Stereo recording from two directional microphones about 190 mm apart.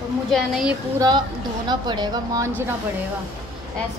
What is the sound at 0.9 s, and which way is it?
A woman's voice, 20° right (ahead or behind).